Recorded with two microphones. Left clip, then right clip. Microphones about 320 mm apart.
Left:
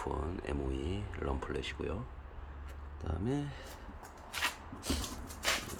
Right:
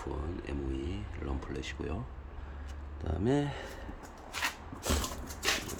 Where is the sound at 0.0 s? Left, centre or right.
Centre.